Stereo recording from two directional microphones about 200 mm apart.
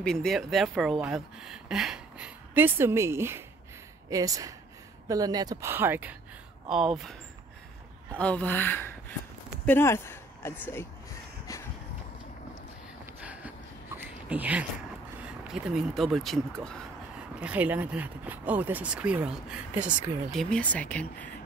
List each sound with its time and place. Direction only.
0.0 s speech: 5° left (ahead or behind)
8.2 s speech: 5° left (ahead or behind)
13.0 s a sound: 5° right (ahead or behind)
15.2 s speech: 5° right (ahead or behind)
17.4 s speech: 5° right (ahead or behind)